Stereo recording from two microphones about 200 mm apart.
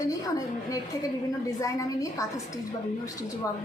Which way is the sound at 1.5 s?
15° left (ahead or behind).